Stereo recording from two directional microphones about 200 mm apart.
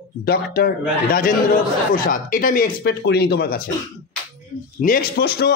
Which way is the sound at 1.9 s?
45° left (ahead or behind).